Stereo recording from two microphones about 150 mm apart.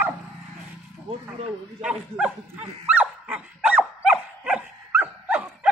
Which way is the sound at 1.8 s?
5° right (ahead or behind).